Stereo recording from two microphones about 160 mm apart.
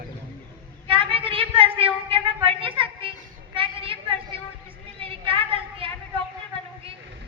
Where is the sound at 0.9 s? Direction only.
35° right (ahead or behind).